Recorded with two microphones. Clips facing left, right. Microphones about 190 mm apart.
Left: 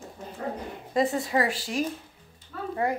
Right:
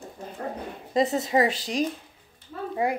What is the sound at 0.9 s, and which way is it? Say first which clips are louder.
Speech: right 2 dB; 20° right (ahead or behind).